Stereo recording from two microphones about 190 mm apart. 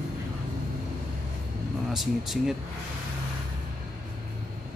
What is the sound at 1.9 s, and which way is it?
Speech, centre (ahead or behind).